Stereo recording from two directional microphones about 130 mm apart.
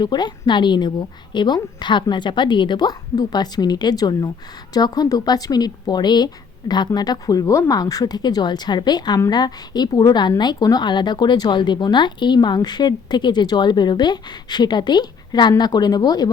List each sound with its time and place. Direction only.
0.0 s a woman's voice: 35° left (ahead or behind)